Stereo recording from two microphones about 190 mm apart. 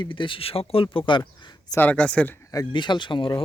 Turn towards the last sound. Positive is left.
turn(degrees=25)  # may be behind; listen again after turning